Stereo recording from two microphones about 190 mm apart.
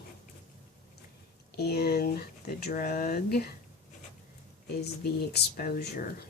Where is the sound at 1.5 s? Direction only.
55° left (ahead or behind).